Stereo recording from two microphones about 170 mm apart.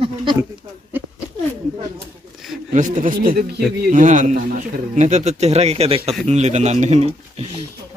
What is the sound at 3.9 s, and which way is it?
A man's voice, 50° right (ahead or behind).